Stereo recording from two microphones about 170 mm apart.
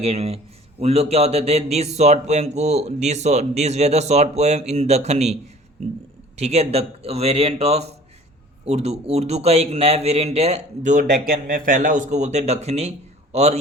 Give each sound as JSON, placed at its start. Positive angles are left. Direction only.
{"t": 0.0, "sound": "speech", "side_deg": -35}